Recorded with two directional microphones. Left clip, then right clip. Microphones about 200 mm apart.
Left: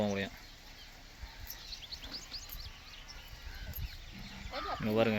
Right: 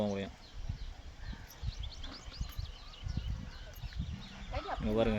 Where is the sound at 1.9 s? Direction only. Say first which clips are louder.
Left 5 dB; 65° right (ahead or behind).